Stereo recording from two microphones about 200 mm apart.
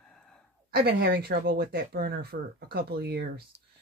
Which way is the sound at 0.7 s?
50° right (ahead or behind).